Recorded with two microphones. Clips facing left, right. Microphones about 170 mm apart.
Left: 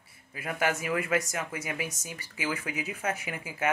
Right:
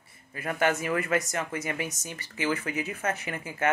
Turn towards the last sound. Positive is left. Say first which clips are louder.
# right 2 dB
turn(degrees=10)  # may be behind; listen again after turning